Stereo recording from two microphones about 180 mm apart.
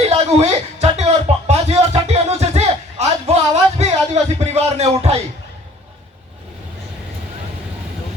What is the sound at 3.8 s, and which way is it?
Speech, 40° right (ahead or behind).